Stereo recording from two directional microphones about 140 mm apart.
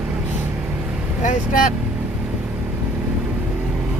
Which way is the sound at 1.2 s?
65° left (ahead or behind).